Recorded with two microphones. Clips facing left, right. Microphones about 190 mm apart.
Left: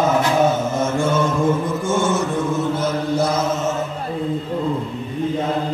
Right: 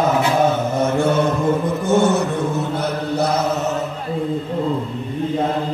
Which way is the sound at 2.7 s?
65° right (ahead or behind).